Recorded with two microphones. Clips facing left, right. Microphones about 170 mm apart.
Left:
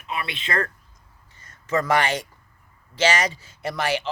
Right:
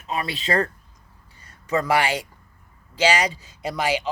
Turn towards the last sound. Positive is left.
turn(degrees=-15)  # may be behind; listen again after turning